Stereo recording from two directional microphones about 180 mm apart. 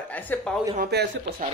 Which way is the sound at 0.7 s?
60° right (ahead or behind).